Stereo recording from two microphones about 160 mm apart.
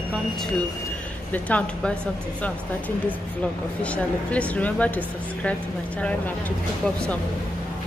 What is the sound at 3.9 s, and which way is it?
Speech, 10° left (ahead or behind).